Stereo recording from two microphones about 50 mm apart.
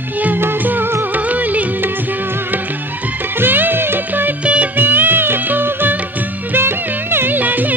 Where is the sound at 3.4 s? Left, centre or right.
Right.